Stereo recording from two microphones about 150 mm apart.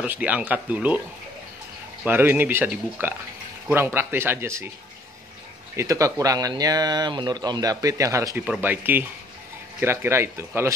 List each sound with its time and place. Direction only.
0.0 s speech: 10° right (ahead or behind)
2.0 s speech: 15° right (ahead or behind)
5.8 s speech: 20° right (ahead or behind)